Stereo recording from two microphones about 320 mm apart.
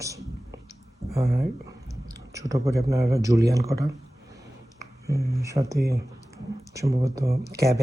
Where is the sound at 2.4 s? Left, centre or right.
Centre.